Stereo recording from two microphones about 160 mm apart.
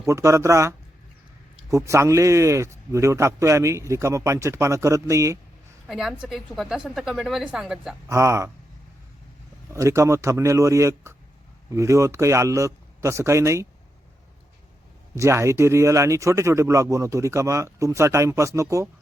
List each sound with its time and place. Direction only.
0.0 s speech: 20° right (ahead or behind)
1.7 s speech: 20° right (ahead or behind)
5.9 s a woman's voice: centre (ahead or behind)
8.0 s speech: 20° right (ahead or behind)
9.6 s speech: 20° right (ahead or behind)
15.1 s speech: 20° right (ahead or behind)